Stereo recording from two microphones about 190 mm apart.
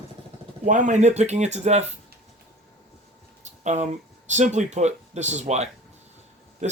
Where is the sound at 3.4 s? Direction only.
35° right (ahead or behind).